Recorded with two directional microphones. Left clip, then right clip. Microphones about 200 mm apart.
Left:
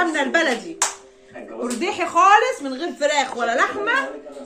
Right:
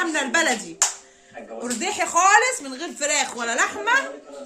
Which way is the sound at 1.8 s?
65° right (ahead or behind).